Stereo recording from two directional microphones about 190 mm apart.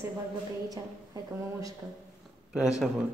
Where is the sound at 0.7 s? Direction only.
20° right (ahead or behind).